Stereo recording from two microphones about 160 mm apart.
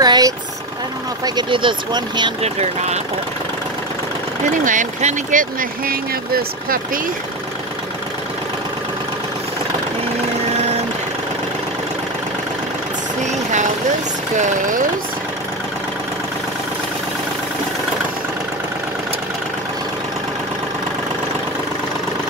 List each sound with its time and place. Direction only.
0.0 s vehicle: 25° right (ahead or behind)
1.2 s speech: 30° right (ahead or behind)
2.4 s speech: 45° right (ahead or behind)
4.5 s speech: 55° right (ahead or behind)
13.2 s vehicle: 50° right (ahead or behind)
14.3 s speech: 50° right (ahead or behind)